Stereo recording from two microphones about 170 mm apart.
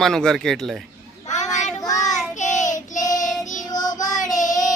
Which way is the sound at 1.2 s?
45° left (ahead or behind).